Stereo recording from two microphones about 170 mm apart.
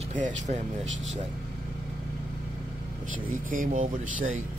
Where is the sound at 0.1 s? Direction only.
45° right (ahead or behind).